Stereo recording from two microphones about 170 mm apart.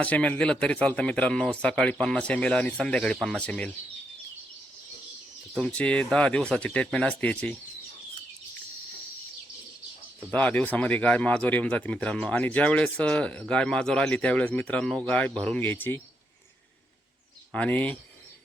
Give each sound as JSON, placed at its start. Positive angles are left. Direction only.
{"t": 0.0, "sound": "speech", "side_deg": 10}
{"t": 5.5, "sound": "speech", "side_deg": 5}
{"t": 10.3, "sound": "speech", "side_deg": 10}
{"t": 17.5, "sound": "speech", "side_deg": 10}